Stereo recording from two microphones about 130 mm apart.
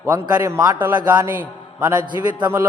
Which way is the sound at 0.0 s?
15° right (ahead or behind).